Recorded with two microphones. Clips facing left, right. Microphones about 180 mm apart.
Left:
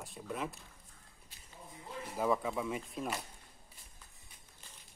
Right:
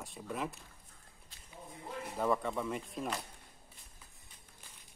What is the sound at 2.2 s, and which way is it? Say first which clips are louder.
Speech: even; centre (ahead or behind).